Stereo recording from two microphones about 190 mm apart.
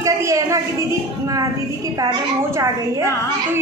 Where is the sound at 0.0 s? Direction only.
15° right (ahead or behind).